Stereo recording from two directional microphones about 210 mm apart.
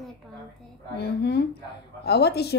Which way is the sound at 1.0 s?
50° left (ahead or behind).